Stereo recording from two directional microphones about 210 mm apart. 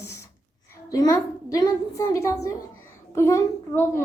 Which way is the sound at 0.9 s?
15° left (ahead or behind).